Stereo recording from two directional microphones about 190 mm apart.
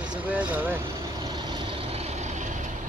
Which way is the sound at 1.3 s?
25° right (ahead or behind).